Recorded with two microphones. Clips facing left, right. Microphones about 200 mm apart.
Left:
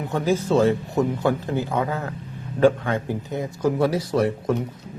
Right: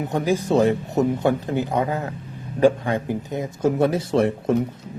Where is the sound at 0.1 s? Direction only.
15° right (ahead or behind).